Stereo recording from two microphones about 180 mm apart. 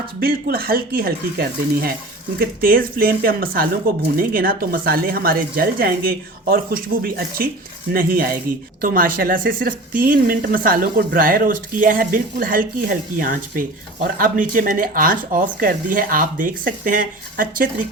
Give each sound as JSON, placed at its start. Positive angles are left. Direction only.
{"t": 0.2, "sound": "speech", "side_deg": -55}